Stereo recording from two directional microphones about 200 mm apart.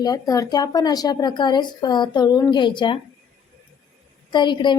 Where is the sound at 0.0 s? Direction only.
20° left (ahead or behind).